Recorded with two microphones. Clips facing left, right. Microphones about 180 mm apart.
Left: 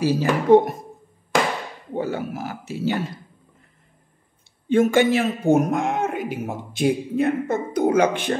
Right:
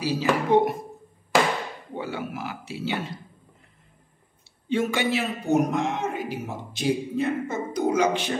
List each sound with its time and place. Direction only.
0.0 s a man's voice: 45° left (ahead or behind)
2.0 s a man's voice: 45° left (ahead or behind)
4.6 s a man's voice: 50° left (ahead or behind)